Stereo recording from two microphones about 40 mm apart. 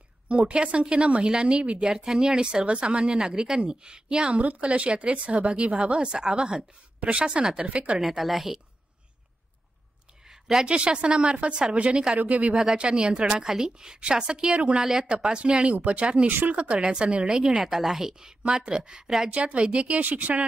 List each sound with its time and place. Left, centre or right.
0.3 s a woman's voice: right
1.9 s a woman's voice: centre
3.2 s a woman's voice: centre
4.4 s a woman's voice: right
8.0 s a woman's voice: centre
10.2 s a sound: centre
10.7 s a woman's voice: right
12.7 s a woman's voice: right
16.3 s speech: right
16.5 s a woman's voice: right
17.6 s a woman's voice: centre
19.0 s a woman's voice: centre
19.3 s a woman's voice: right
20.1 s speech: right